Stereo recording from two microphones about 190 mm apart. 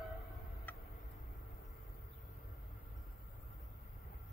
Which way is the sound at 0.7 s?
10° left (ahead or behind).